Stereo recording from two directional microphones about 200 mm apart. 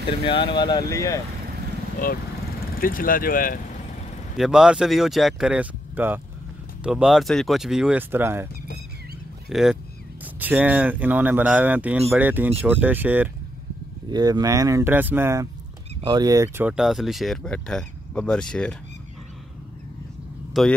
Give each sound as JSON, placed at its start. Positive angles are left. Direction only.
{"t": 0.2, "sound": "speech", "side_deg": 25}
{"t": 2.7, "sound": "speech", "side_deg": 45}
{"t": 4.4, "sound": "speech", "side_deg": -5}
{"t": 9.5, "sound": "speech", "side_deg": 0}
{"t": 14.1, "sound": "speech", "side_deg": -20}
{"t": 20.5, "sound": "speech", "side_deg": 0}